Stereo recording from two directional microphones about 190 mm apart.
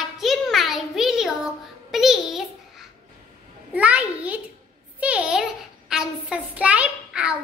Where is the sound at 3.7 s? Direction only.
5° right (ahead or behind).